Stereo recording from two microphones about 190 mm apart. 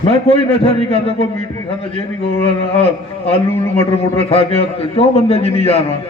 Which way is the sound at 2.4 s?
30° left (ahead or behind).